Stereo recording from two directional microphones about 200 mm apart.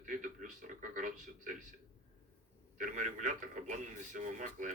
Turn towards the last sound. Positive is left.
turn(degrees=-40)  # may be behind; listen again after turning